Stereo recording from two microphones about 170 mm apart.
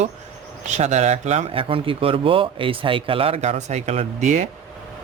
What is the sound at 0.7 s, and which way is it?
Speech, 45° right (ahead or behind).